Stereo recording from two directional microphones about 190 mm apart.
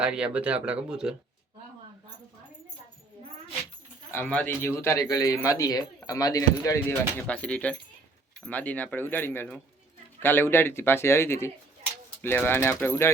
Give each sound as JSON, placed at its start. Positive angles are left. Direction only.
{"t": 0.0, "sound": "speech", "side_deg": -5}
{"t": 4.1, "sound": "speech", "side_deg": 10}